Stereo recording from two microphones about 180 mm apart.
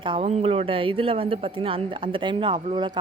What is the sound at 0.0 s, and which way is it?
Speech, 25° right (ahead or behind).